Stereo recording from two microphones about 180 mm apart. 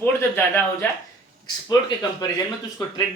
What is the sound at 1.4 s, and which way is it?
Speech, 20° left (ahead or behind).